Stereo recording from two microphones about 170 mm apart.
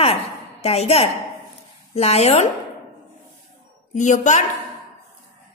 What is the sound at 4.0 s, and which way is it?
Speech, 45° left (ahead or behind).